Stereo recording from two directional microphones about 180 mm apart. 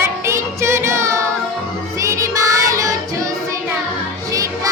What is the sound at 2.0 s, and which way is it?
Child singing, 15° right (ahead or behind).